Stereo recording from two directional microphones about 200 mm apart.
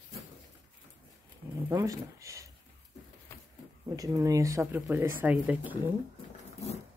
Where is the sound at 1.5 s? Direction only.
15° right (ahead or behind).